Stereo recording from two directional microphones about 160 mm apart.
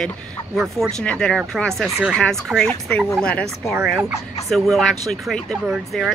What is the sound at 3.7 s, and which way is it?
Speech, 5° right (ahead or behind).